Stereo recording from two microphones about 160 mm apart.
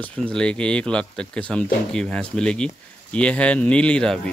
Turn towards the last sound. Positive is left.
turn(degrees=5)  # may be behind; listen again after turning